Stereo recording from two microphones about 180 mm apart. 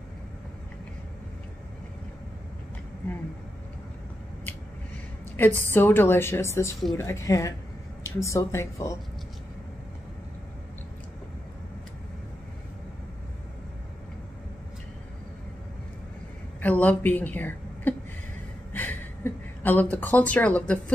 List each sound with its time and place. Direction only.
5.3 s a woman's voice: 10° left (ahead or behind)
16.6 s a woman's voice: 10° left (ahead or behind)
18.7 s a sound: 10° left (ahead or behind)